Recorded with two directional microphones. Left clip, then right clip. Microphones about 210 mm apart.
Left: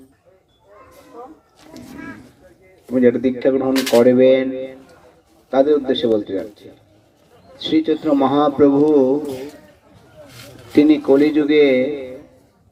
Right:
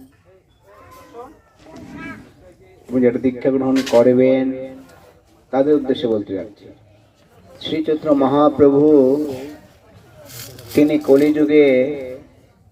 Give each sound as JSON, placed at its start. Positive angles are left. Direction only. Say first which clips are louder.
{"t": 2.9, "sound": "speech", "louder": "left 1 dB", "side_deg": 40}
{"t": 3.7, "sound": "speech", "louder": "right 1 dB", "side_deg": 30}
{"t": 7.6, "sound": "speech", "louder": "left 2 dB", "side_deg": 40}
{"t": 10.2, "sound": "a sound", "louder": "right 4 dB", "side_deg": -50}
{"t": 10.7, "sound": "speech", "louder": "even", "side_deg": 45}